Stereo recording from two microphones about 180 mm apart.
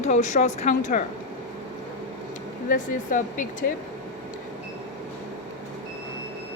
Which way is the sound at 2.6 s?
45° left (ahead or behind).